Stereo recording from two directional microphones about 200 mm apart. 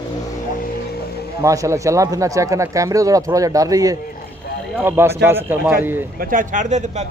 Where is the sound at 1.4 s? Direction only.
15° right (ahead or behind).